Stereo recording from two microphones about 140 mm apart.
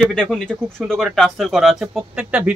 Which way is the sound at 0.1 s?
5° left (ahead or behind).